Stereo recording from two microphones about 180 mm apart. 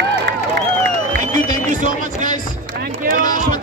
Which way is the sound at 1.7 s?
45° right (ahead or behind).